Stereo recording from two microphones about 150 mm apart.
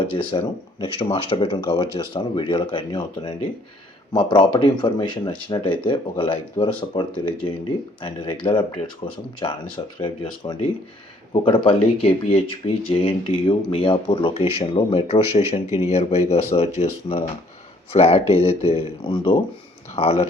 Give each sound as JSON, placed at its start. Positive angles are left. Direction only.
{"t": 0.0, "sound": "speech", "side_deg": 35}